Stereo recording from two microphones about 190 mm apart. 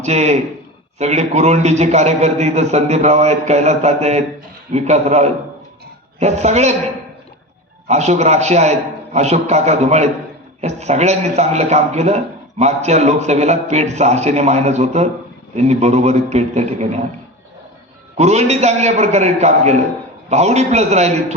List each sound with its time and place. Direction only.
0.0 s a man's voice: 35° right (ahead or behind)
7.9 s a man's voice: 35° right (ahead or behind)
18.2 s a man's voice: 35° right (ahead or behind)